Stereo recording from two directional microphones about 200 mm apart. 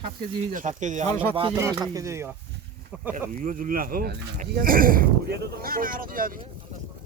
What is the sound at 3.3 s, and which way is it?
Speech, 40° right (ahead or behind).